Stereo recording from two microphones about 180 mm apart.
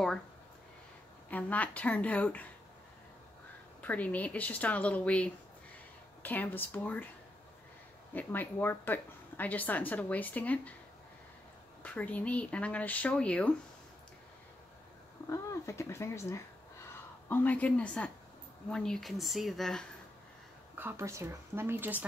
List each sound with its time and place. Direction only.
1.3 s speech: 10° left (ahead or behind)
3.8 s speech: 10° left (ahead or behind)
8.1 s speech: 10° left (ahead or behind)
11.8 s speech: 10° left (ahead or behind)
15.2 s a woman's voice: 15° left (ahead or behind)
20.7 s speech: 15° right (ahead or behind)